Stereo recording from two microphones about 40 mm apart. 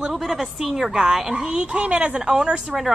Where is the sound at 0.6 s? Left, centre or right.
Centre.